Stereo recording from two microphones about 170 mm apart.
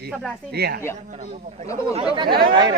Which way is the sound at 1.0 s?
45° right (ahead or behind).